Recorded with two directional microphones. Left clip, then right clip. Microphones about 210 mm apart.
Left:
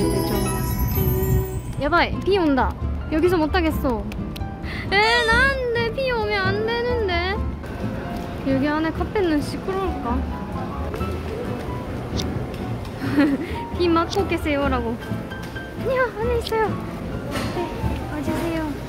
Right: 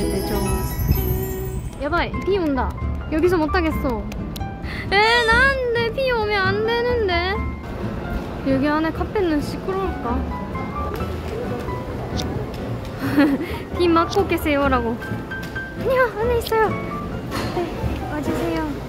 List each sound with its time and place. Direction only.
0.0 s music: centre (ahead or behind)
1.9 s speech: 15° left (ahead or behind)
3.1 s speech: centre (ahead or behind)
5.1 s a sound: 10° right (ahead or behind)
8.5 s speech: 5° right (ahead or behind)
13.0 s a sound: 15° right (ahead or behind)
13.7 s a woman's voice: 10° right (ahead or behind)
15.9 s a woman's voice: 15° right (ahead or behind)